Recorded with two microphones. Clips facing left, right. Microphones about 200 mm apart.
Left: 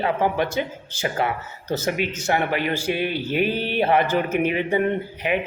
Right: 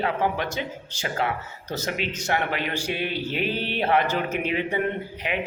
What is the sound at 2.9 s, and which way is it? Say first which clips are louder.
Speech: left 4 dB; 50° left (ahead or behind).